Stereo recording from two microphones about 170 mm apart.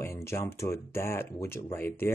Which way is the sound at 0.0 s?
15° left (ahead or behind).